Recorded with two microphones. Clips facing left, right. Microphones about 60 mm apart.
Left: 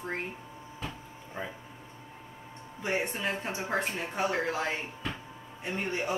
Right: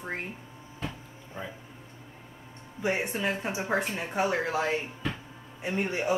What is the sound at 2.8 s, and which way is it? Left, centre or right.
Speech, centre.